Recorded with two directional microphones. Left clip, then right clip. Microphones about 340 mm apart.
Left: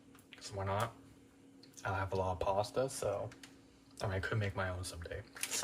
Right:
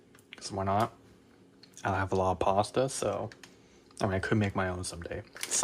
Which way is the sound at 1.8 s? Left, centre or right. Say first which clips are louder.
Right 8 dB; centre.